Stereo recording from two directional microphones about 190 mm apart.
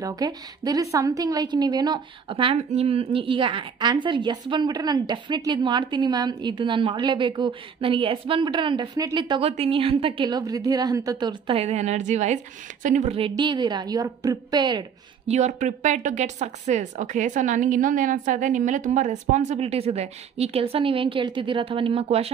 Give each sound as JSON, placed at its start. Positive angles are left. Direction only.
{"t": 0.0, "sound": "a woman's voice", "side_deg": -20}
{"t": 13.3, "sound": "a woman's voice", "side_deg": -25}
{"t": 15.2, "sound": "a woman's voice", "side_deg": -35}